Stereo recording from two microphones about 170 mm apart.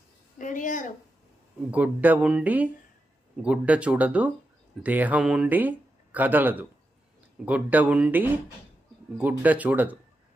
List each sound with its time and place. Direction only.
0.3 s speech: 50° left (ahead or behind)
1.7 s speech: 10° right (ahead or behind)